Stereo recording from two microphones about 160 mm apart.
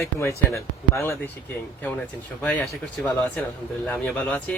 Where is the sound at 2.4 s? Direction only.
10° left (ahead or behind).